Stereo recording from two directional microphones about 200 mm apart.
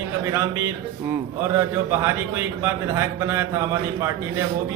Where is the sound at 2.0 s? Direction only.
10° right (ahead or behind).